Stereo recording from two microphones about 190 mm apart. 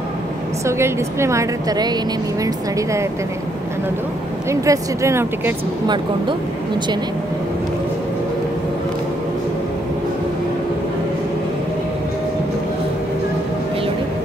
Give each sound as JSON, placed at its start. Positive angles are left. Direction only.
{"t": 0.7, "sound": "speech", "side_deg": -15}
{"t": 4.5, "sound": "speech", "side_deg": -15}